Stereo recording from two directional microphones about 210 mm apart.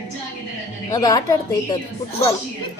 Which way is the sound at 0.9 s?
20° left (ahead or behind).